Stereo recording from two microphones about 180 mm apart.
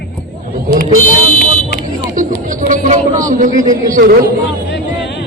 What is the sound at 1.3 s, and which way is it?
Buzzer, 65° left (ahead or behind).